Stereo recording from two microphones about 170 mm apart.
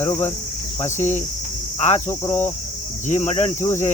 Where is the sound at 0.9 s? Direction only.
45° left (ahead or behind).